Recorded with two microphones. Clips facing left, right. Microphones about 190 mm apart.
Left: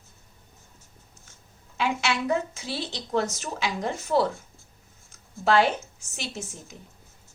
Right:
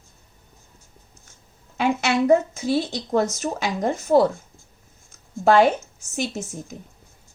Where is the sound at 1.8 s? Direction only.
50° right (ahead or behind).